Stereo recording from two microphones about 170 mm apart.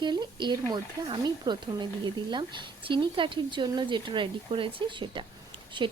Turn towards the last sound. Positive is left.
turn(degrees=-30)  # may be behind; listen again after turning